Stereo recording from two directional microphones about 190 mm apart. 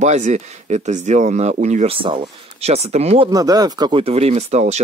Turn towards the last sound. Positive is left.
turn(degrees=-35)  # may be behind; listen again after turning